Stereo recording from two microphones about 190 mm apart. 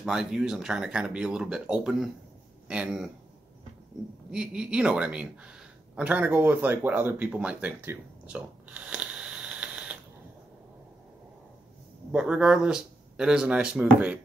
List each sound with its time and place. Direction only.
0.0 s speech: 5° right (ahead or behind)
4.3 s speech: 5° right (ahead or behind)
12.1 s speech: 5° right (ahead or behind)